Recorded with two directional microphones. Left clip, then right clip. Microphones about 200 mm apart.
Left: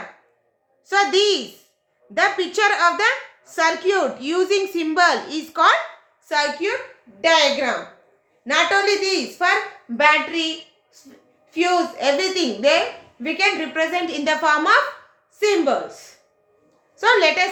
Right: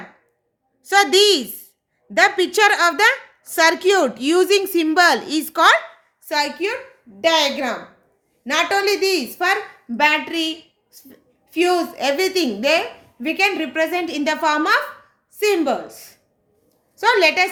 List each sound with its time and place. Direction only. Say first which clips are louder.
0.9 s a woman's voice: right 3 dB; 55° right (ahead or behind)